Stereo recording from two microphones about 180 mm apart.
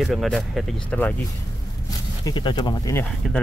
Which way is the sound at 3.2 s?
5° left (ahead or behind).